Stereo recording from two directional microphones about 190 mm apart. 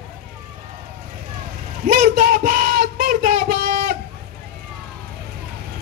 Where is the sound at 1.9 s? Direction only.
45° right (ahead or behind).